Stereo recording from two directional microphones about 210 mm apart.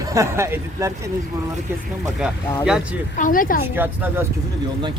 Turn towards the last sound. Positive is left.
turn(degrees=-10)  # may be behind; listen again after turning